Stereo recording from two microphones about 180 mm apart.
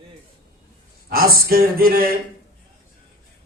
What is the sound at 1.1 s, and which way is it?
A man's voice, 55° right (ahead or behind).